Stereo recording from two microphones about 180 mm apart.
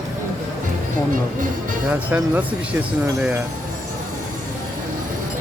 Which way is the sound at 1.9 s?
10° right (ahead or behind).